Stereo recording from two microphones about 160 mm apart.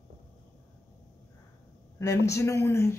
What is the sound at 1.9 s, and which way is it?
A man's voice, 20° left (ahead or behind).